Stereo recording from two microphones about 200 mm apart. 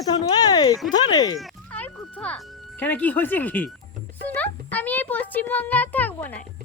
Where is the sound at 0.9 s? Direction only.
20° left (ahead or behind).